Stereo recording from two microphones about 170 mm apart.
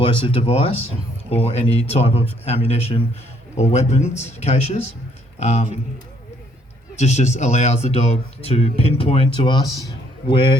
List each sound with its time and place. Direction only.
0.0 s a man's voice: 30° left (ahead or behind)
7.0 s a man's voice: 40° left (ahead or behind)